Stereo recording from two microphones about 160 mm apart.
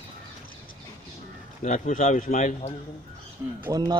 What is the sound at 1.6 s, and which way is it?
A man's voice, 55° left (ahead or behind).